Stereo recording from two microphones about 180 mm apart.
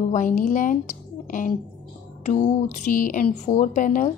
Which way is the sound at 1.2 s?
45° left (ahead or behind).